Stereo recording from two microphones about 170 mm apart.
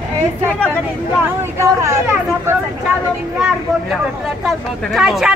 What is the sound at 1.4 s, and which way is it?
Speech, 15° right (ahead or behind).